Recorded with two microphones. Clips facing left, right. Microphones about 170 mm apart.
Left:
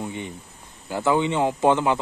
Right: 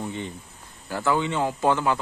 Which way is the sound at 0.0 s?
15° left (ahead or behind).